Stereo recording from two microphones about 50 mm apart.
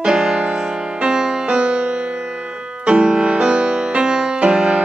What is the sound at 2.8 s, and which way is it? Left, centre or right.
Music, centre.